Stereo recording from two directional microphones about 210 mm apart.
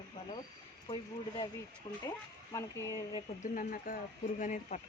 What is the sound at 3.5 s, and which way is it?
Speech, 40° left (ahead or behind).